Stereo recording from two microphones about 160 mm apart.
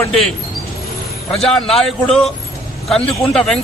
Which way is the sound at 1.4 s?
Centre (ahead or behind).